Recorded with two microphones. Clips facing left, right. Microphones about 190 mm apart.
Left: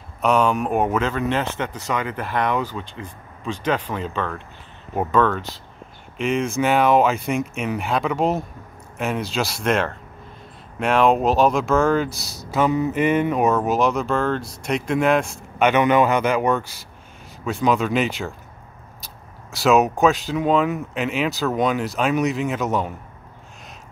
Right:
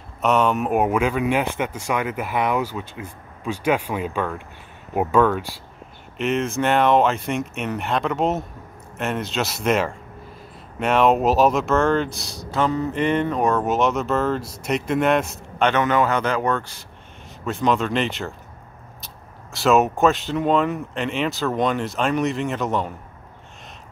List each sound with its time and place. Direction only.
0.2 s speech: centre (ahead or behind)
15.7 s speech: 15° left (ahead or behind)
19.5 s speech: centre (ahead or behind)